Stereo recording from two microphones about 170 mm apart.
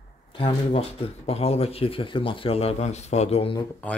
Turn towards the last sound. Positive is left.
turn(degrees=30)  # may be behind; listen again after turning